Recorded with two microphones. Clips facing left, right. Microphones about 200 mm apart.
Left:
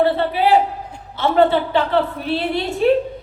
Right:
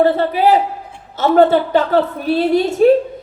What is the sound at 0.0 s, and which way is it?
A woman's voice, 45° right (ahead or behind).